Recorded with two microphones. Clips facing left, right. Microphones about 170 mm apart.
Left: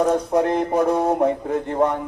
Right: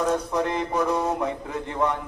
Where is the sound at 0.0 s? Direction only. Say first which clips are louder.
Left 6 dB; 50° left (ahead or behind).